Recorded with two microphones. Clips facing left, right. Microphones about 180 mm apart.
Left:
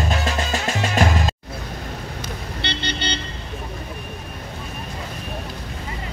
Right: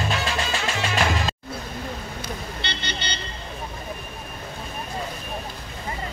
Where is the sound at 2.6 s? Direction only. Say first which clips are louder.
Left 4 dB; 65° left (ahead or behind).